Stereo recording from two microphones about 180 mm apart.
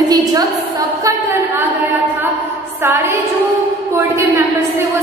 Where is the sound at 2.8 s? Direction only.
15° right (ahead or behind).